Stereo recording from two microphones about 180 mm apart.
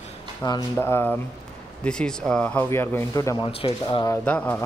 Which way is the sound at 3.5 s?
30° left (ahead or behind).